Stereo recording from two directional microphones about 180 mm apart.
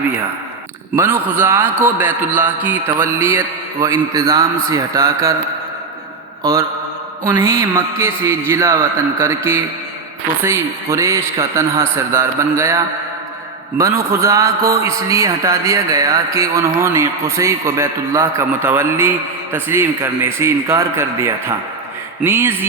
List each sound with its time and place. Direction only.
0.9 s a man's voice: 10° right (ahead or behind)
6.4 s mantra: 15° right (ahead or behind)
7.3 s a man's voice: 15° right (ahead or behind)